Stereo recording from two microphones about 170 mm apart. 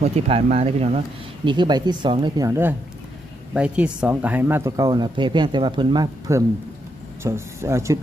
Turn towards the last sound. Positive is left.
turn(degrees=-15)  # may be behind; listen again after turning